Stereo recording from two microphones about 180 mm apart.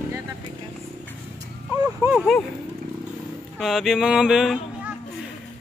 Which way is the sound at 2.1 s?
Centre (ahead or behind).